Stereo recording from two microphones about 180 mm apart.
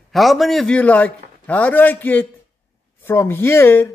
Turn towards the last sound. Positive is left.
turn(degrees=15)  # may be behind; listen again after turning